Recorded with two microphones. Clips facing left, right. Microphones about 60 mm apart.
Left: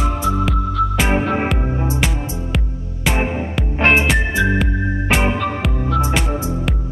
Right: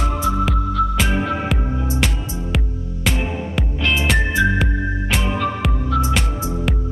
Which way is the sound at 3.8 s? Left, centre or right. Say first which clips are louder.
Left 7 dB; left.